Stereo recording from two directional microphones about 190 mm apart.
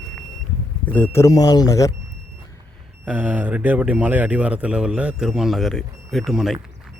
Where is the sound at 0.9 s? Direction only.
10° left (ahead or behind).